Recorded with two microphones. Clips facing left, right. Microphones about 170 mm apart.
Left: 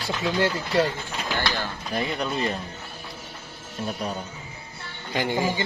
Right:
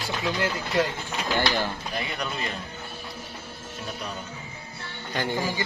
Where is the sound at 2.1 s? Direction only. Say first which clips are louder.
Left 5 dB; 25° left (ahead or behind).